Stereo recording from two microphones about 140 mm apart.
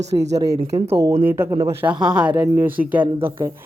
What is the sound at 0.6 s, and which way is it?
Speech, 50° right (ahead or behind).